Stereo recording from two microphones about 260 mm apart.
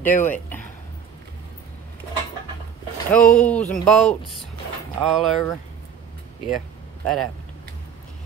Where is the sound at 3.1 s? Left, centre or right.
Centre.